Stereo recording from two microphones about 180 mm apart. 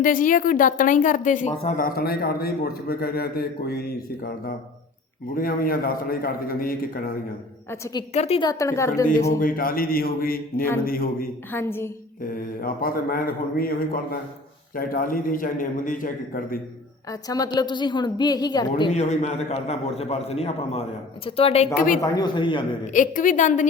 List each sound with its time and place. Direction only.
0.0 s a woman's voice: 50° left (ahead or behind)
8.1 s a man's voice: 35° left (ahead or behind)
8.4 s speech: 20° left (ahead or behind)
9.4 s a woman's voice: 50° left (ahead or behind)
11.5 s speech: 10° left (ahead or behind)
12.5 s a man's voice: 55° left (ahead or behind)
17.1 s a woman's voice: 20° left (ahead or behind)
18.9 s a man's voice: 40° left (ahead or behind)
22.0 s a woman's voice: 20° left (ahead or behind)
22.9 s a woman's voice: 45° left (ahead or behind)